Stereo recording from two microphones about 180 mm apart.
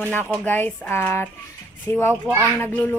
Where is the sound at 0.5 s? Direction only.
10° left (ahead or behind).